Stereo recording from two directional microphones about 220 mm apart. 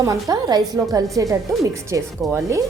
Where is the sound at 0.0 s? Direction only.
15° right (ahead or behind).